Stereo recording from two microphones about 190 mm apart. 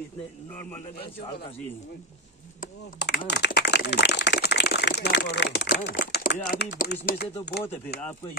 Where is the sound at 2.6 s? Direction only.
55° left (ahead or behind).